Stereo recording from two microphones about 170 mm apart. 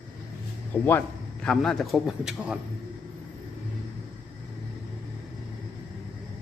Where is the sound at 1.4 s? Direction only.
5° left (ahead or behind).